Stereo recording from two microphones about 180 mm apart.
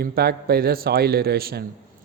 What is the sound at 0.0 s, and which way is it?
Speech, 60° right (ahead or behind).